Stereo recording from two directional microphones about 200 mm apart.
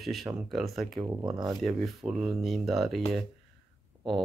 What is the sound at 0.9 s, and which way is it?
Speech, 20° right (ahead or behind).